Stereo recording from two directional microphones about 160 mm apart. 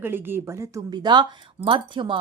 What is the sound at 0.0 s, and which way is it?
A woman's voice, 15° right (ahead or behind).